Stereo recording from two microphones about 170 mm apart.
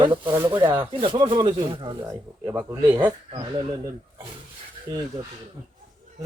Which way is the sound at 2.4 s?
15° right (ahead or behind).